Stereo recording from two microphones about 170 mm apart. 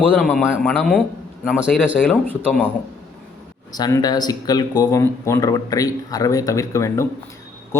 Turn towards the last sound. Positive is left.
turn(degrees=15)  # may be behind; listen again after turning